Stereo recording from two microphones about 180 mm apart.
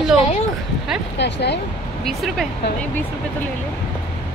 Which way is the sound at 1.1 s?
75° left (ahead or behind).